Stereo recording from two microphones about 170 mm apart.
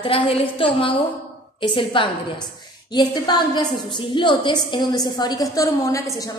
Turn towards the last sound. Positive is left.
turn(degrees=20)  # may be behind; listen again after turning